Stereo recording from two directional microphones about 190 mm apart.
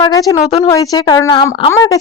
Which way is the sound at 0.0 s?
20° left (ahead or behind).